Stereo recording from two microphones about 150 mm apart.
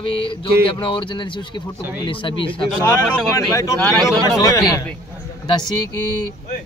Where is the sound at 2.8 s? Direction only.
20° left (ahead or behind).